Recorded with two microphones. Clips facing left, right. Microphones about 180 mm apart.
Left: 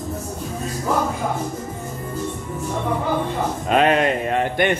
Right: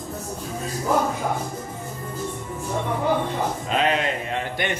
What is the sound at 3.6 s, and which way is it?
Speech, 55° left (ahead or behind).